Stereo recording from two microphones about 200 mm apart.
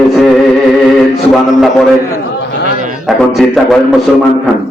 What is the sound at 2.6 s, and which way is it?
Music, 40° right (ahead or behind).